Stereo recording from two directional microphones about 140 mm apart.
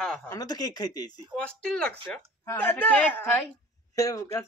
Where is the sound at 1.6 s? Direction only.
5° left (ahead or behind).